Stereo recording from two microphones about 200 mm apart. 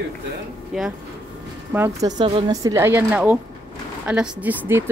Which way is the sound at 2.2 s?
25° right (ahead or behind).